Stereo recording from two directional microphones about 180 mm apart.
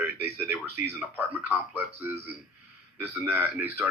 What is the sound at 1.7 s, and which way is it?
Speech, 10° right (ahead or behind).